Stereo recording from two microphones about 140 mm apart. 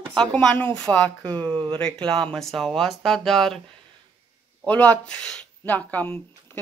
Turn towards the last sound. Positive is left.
turn(degrees=10)  # may be behind; listen again after turning